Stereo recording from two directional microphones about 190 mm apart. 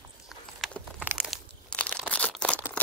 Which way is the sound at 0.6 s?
5° right (ahead or behind).